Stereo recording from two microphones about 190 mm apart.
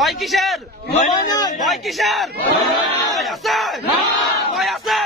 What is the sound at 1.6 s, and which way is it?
Speech, centre (ahead or behind).